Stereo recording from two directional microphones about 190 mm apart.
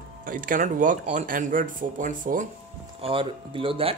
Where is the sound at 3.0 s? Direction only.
30° right (ahead or behind).